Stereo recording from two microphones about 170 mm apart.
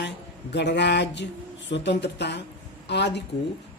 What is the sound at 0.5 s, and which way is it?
Speech, 90° left.